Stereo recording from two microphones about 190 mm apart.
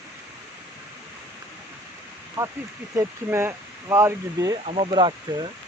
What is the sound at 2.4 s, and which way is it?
Speech, 15° right (ahead or behind).